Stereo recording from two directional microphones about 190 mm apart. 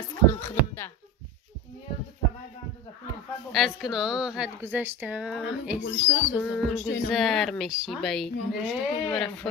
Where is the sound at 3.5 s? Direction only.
Centre (ahead or behind).